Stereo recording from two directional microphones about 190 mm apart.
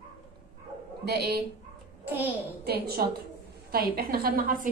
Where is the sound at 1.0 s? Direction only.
60° right (ahead or behind).